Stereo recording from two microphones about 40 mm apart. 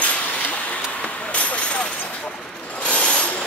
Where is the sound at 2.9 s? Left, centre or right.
Left.